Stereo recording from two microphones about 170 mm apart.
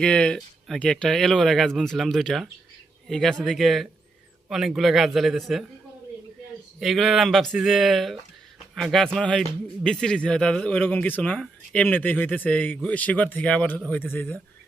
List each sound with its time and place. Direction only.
0.0 s speech: 5° left (ahead or behind)
6.7 s speech: centre (ahead or behind)